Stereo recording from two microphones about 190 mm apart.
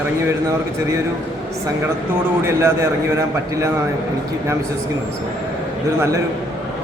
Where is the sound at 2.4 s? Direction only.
15° right (ahead or behind).